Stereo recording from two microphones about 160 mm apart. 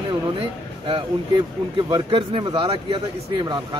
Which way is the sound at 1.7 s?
30° right (ahead or behind).